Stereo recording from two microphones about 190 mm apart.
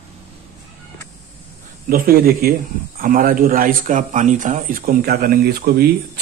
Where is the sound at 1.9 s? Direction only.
50° right (ahead or behind).